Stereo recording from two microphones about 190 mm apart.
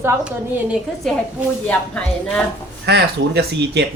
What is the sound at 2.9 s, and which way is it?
Speech, 60° right (ahead or behind).